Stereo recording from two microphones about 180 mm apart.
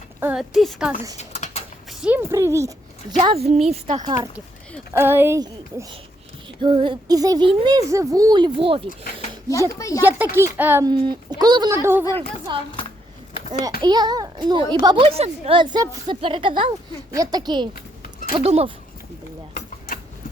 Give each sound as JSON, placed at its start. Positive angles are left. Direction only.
{"t": 0.2, "sound": "speech", "side_deg": -5}
{"t": 1.1, "sound": "a sound", "side_deg": 40}
{"t": 1.9, "sound": "a woman's voice", "side_deg": -5}
{"t": 3.2, "sound": "speech", "side_deg": -30}
{"t": 4.0, "sound": "a child's voice", "side_deg": -20}
{"t": 4.9, "sound": "a woman's voice", "side_deg": -10}
{"t": 9.7, "sound": "speech", "side_deg": 20}
{"t": 10.0, "sound": "a woman's voice", "side_deg": -10}
{"t": 10.8, "sound": "a child's voice", "side_deg": -25}
{"t": 12.5, "sound": "a child's voice", "side_deg": -25}
{"t": 13.8, "sound": "a child's voice", "side_deg": -25}